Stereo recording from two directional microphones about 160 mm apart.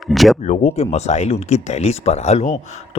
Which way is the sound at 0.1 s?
Centre (ahead or behind).